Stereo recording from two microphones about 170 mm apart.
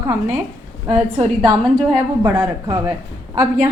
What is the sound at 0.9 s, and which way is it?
Speech, 35° right (ahead or behind).